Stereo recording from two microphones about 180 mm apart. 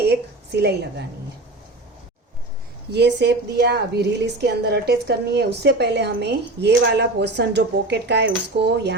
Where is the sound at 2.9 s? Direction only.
70° right (ahead or behind).